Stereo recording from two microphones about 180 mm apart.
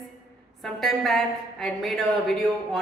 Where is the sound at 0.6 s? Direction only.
Centre (ahead or behind).